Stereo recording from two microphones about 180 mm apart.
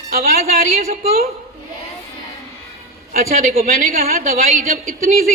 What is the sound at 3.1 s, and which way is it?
A man's voice, 55° right (ahead or behind).